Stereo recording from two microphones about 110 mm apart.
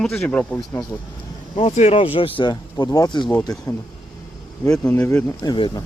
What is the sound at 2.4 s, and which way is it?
Speech, 35° left (ahead or behind).